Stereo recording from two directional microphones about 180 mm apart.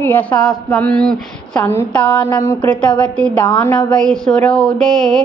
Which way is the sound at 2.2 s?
15° left (ahead or behind).